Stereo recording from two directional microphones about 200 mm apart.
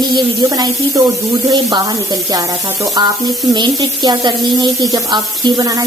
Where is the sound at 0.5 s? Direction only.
20° right (ahead or behind).